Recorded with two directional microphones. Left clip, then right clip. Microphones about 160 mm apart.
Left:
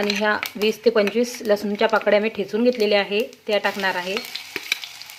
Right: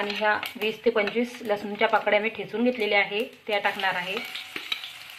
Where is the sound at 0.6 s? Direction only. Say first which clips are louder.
Left 8 dB; 60° left (ahead or behind).